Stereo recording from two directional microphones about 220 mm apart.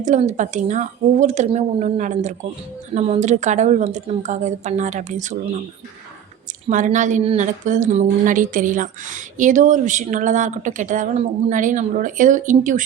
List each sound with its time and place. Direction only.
0.0 s speech: 35° right (ahead or behind)
6.7 s speech: 35° right (ahead or behind)